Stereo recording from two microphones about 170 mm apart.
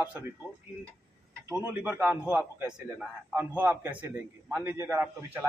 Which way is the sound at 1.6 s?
10° right (ahead or behind).